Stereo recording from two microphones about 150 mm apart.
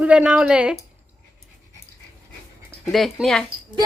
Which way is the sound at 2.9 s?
Centre (ahead or behind).